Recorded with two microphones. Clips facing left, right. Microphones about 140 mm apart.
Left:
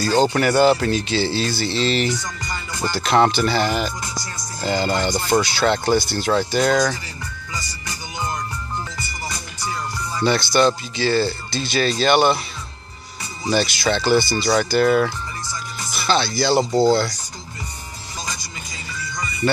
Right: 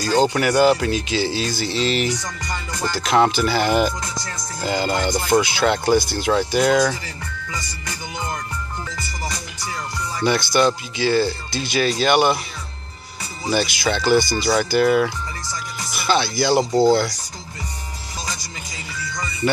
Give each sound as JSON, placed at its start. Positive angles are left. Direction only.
{"t": 0.3, "sound": "speech", "side_deg": 0}
{"t": 10.2, "sound": "speech", "side_deg": -10}
{"t": 13.5, "sound": "speech", "side_deg": -10}
{"t": 16.7, "sound": "speech", "side_deg": 0}
{"t": 19.4, "sound": "speech", "side_deg": -15}